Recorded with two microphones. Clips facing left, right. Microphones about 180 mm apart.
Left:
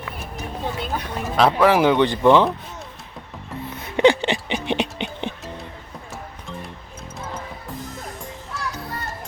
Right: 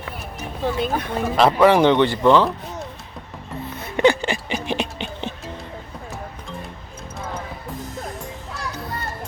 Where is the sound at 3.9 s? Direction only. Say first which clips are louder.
Left 1 dB; 20° left (ahead or behind).